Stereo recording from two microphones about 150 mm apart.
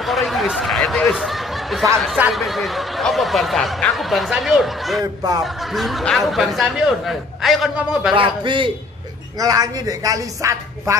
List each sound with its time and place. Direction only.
0.0 s a sound: centre (ahead or behind)
2.1 s speech: 5° right (ahead or behind)
8.2 s a man's voice: 35° right (ahead or behind)